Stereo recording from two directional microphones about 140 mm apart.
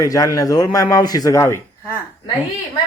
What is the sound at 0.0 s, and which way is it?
Speech, 25° left (ahead or behind).